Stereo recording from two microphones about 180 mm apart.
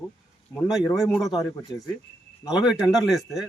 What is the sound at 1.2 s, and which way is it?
Speech, centre (ahead or behind).